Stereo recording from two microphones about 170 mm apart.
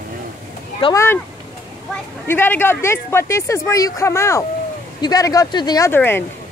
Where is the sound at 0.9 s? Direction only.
15° left (ahead or behind).